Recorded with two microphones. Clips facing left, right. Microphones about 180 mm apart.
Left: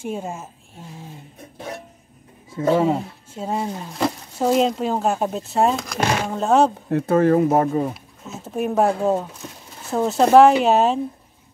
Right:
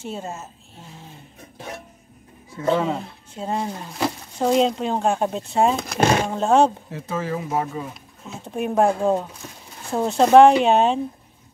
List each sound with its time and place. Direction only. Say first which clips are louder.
0.0 s a woman's voice: left 3 dB; 10° left (ahead or behind)
2.9 s speech: left 5 dB; 5° left (ahead or behind)
5.8 s speech: right 3 dB; 25° right (ahead or behind)
6.2 s speech: even; centre (ahead or behind)
6.9 s speech: left 11 dB; 60° left (ahead or behind)
7.9 s speech: left 2 dB; 5° left (ahead or behind)